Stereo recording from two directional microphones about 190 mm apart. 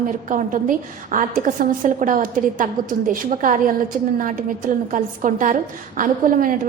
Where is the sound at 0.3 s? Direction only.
45° right (ahead or behind).